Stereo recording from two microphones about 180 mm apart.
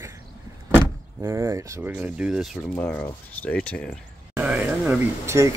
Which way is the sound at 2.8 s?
10° left (ahead or behind).